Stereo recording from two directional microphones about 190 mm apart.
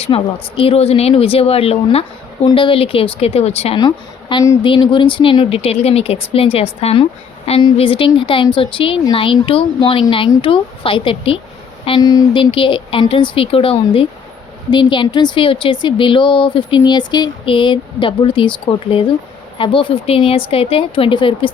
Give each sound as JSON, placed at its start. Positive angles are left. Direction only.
{"t": 0.0, "sound": "speech", "side_deg": 30}
{"t": 3.8, "sound": "speech", "side_deg": 20}